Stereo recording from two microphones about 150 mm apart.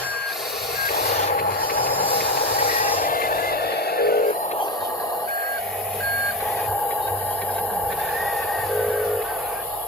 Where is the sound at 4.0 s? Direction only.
90° left.